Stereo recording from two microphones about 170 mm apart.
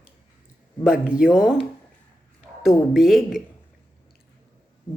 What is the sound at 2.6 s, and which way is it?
Speech, centre (ahead or behind).